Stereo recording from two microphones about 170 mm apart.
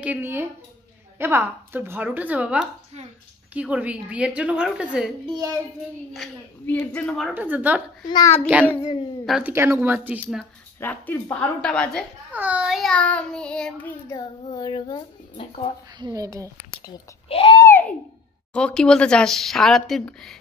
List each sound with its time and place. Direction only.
0.0 s a woman's voice: 10° right (ahead or behind)
5.3 s speech: 20° right (ahead or behind)
6.6 s a woman's voice: 10° left (ahead or behind)
7.3 s a woman's voice: 10° right (ahead or behind)
8.1 s a child's voice: 20° left (ahead or behind)
9.2 s speech: centre (ahead or behind)
9.5 s a woman's voice: 15° right (ahead or behind)
10.8 s a woman's voice: 10° left (ahead or behind)
12.3 s speech: 10° right (ahead or behind)
14.1 s a child's voice: 25° left (ahead or behind)
16.0 s speech: 20° right (ahead or behind)
16.5 s a child's voice: 25° left (ahead or behind)
17.6 s a sound: 10° left (ahead or behind)
18.5 s speech: 5° left (ahead or behind)